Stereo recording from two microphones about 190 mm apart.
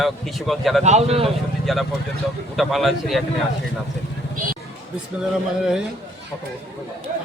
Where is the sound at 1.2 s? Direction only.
Centre (ahead or behind).